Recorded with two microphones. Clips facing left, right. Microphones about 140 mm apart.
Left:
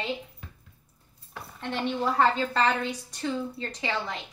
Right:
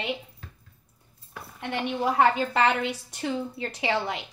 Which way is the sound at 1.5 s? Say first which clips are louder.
Even; 10° right (ahead or behind).